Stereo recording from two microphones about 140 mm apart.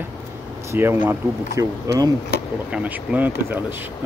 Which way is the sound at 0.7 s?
15° right (ahead or behind).